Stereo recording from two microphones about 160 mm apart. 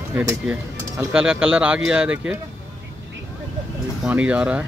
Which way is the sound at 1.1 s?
5° right (ahead or behind).